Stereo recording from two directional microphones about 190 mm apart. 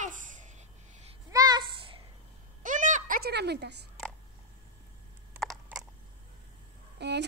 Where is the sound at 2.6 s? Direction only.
40° right (ahead or behind); by 3.8 s 60° right (ahead or behind).